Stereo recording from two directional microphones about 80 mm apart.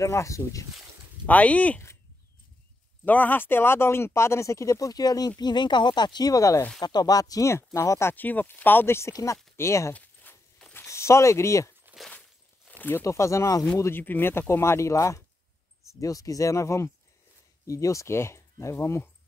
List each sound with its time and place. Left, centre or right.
0.0 s speech: left
1.2 s speech: centre
3.1 s speech: left
5.4 s speech: left
6.3 s speech: left
6.8 s speech: left
8.1 s speech: left
9.1 s speech: left
10.3 s walk: left
10.7 s speech: left
12.1 s walk: centre
13.0 s speech: left
13.7 s speech: left